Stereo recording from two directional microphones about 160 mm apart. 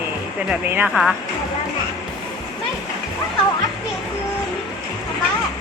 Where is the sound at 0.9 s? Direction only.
Centre (ahead or behind).